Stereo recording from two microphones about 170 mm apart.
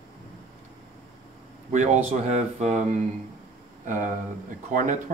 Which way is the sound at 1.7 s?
45° right (ahead or behind).